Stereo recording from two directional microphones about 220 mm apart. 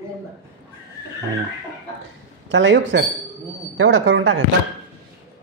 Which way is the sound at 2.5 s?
55° right (ahead or behind).